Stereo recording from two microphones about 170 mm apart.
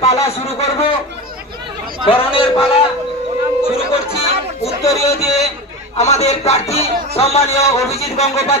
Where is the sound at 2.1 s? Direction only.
35° left (ahead or behind).